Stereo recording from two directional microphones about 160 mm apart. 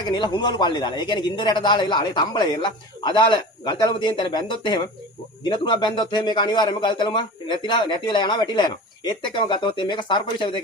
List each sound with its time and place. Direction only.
0.1 s a man's voice: 30° left (ahead or behind)